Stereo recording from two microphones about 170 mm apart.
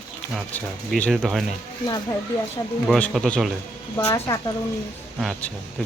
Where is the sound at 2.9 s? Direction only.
Centre (ahead or behind).